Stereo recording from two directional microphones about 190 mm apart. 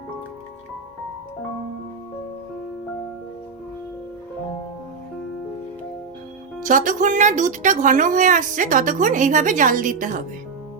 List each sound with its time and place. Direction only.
6.7 s speech: 45° right (ahead or behind)